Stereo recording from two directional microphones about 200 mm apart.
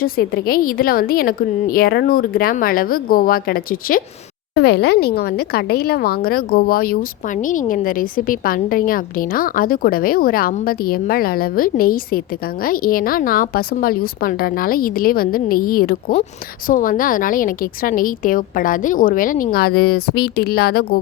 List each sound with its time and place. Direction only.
0.0 s a woman's voice: 50° left (ahead or behind)